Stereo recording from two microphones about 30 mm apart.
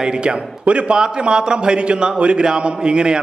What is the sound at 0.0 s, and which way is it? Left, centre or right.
A man's voice, right.